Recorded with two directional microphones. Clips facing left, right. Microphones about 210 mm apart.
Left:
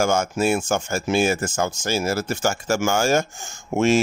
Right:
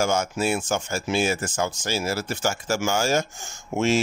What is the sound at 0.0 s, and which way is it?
Speech, 50° left (ahead or behind).